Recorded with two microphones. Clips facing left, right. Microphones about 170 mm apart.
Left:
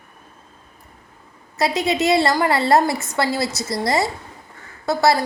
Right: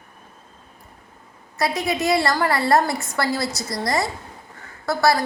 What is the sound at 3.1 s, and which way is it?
A woman's voice, 25° left (ahead or behind).